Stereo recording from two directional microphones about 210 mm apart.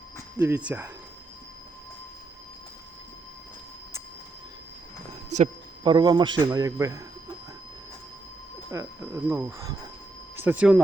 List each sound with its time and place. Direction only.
0.3 s speech: 10° right (ahead or behind)
5.3 s a man's voice: 30° right (ahead or behind)
8.7 s speech: 15° right (ahead or behind)